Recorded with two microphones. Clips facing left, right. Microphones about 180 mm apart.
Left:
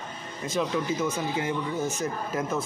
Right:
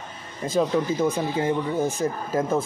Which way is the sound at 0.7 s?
35° right (ahead or behind).